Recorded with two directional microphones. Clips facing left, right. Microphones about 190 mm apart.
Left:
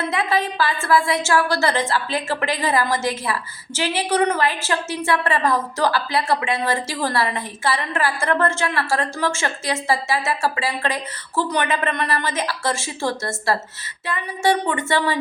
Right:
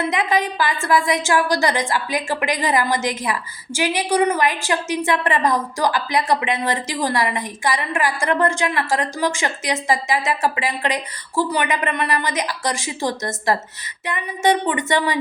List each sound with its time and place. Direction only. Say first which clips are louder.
0.0 s a woman's voice: right 1 dB; 15° right (ahead or behind)